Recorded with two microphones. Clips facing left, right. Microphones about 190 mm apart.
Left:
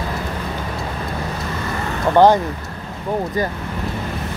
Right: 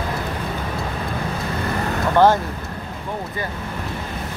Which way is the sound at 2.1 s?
15° left (ahead or behind).